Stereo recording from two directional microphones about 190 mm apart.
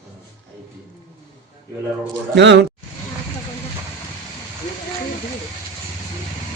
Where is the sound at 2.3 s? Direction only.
65° right (ahead or behind).